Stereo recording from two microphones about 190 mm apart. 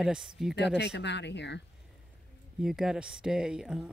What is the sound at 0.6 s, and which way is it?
Speech, 65° left (ahead or behind).